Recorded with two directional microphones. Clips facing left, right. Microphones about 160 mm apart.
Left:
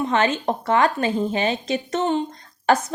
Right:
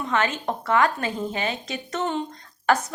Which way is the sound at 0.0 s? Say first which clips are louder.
Left 4 dB; 25° left (ahead or behind).